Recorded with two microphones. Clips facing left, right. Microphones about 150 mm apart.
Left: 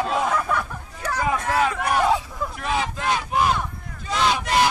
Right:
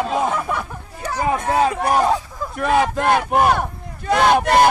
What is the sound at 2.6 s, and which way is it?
Speech, 55° right (ahead or behind).